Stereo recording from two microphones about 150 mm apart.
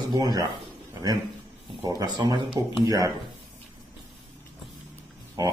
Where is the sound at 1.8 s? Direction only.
25° right (ahead or behind).